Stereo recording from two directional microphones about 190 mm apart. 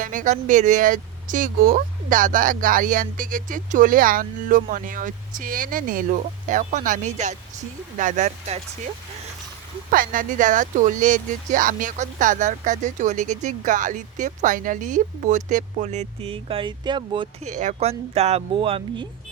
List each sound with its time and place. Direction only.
0.0 s speech: 45° right (ahead or behind)
9.9 s speech: 45° right (ahead or behind); by 17.2 s 25° right (ahead or behind)
17.4 s speech: 40° right (ahead or behind)